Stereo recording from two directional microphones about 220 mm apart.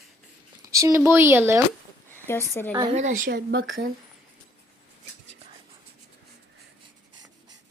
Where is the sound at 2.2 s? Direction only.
10° left (ahead or behind).